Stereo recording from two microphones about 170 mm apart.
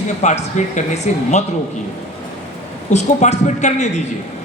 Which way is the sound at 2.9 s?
45° left (ahead or behind).